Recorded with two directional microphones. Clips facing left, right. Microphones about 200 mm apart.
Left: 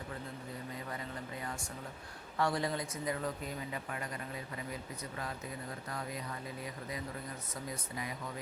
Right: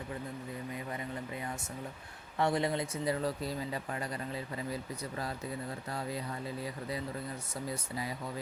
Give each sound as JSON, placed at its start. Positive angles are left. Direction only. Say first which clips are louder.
{"t": 2.4, "sound": "speech", "louder": "right 3 dB", "side_deg": -25}